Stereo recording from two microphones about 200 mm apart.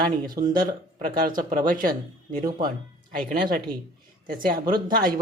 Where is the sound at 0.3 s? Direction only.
45° right (ahead or behind).